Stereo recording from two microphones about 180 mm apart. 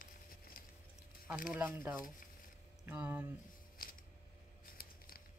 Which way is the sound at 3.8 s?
50° left (ahead or behind).